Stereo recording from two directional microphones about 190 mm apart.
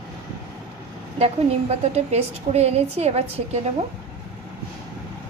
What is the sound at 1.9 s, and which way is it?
A woman's voice, 35° right (ahead or behind).